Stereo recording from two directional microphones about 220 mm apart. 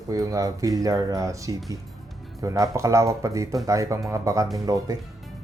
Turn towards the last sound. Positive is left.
turn(degrees=-15)  # may be behind; listen again after turning